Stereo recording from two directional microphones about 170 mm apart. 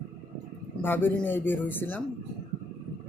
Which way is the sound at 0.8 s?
10° left (ahead or behind).